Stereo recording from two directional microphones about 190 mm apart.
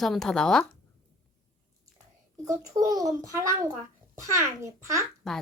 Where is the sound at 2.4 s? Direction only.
15° right (ahead or behind).